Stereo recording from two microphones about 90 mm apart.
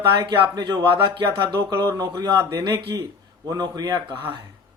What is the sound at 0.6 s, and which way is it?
Speech, 50° right (ahead or behind).